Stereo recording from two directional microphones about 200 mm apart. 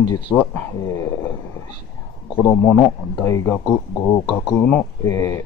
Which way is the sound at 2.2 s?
15° left (ahead or behind).